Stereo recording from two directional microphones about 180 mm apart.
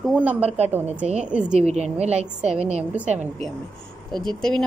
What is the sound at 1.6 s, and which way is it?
Speech, 35° right (ahead or behind).